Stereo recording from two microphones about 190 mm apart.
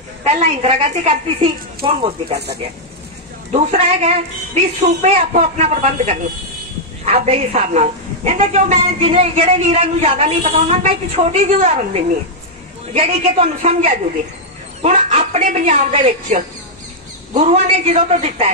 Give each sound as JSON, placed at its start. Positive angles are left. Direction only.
{"t": 0.2, "sound": "a woman's voice", "side_deg": -35}
{"t": 3.5, "sound": "a woman's voice", "side_deg": -35}